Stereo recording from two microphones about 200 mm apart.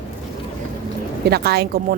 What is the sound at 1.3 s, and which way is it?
Speech, 55° right (ahead or behind).